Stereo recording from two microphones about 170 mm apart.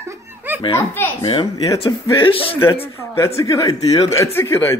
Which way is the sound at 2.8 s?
15° left (ahead or behind).